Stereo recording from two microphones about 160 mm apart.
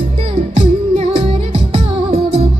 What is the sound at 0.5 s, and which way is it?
Music, 40° right (ahead or behind).